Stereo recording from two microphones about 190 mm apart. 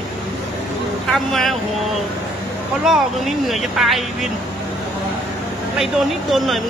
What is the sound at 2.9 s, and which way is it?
Speech, centre (ahead or behind).